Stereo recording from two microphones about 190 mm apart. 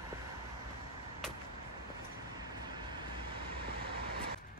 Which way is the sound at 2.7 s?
25° right (ahead or behind).